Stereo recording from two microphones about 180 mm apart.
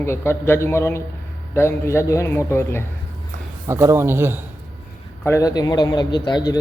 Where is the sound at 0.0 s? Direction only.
15° left (ahead or behind).